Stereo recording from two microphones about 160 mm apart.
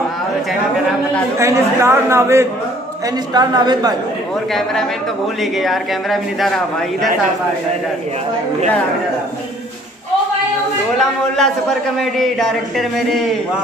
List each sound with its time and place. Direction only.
1.4 s a man's voice: 15° right (ahead or behind)
5.4 s a man's voice: centre (ahead or behind)
11.0 s a man's voice: centre (ahead or behind)